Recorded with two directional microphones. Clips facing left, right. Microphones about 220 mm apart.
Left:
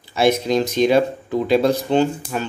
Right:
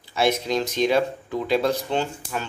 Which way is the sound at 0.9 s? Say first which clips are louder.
Left 5 dB; 25° left (ahead or behind).